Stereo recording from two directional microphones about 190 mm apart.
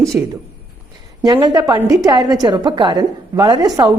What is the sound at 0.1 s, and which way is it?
Speech, 10° right (ahead or behind).